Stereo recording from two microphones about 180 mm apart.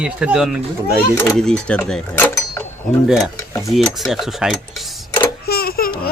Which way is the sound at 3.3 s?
15° left (ahead or behind).